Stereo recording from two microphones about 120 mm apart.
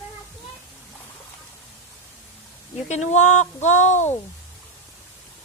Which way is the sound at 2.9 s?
75° left (ahead or behind).